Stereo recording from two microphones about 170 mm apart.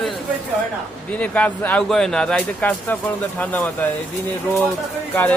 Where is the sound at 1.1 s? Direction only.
10° left (ahead or behind).